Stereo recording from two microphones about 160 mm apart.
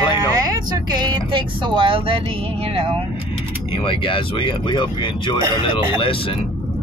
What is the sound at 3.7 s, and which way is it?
Speech, 35° left (ahead or behind).